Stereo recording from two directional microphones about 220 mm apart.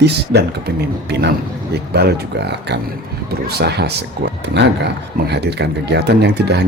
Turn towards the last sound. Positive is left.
turn(degrees=-50)  # may be behind; listen again after turning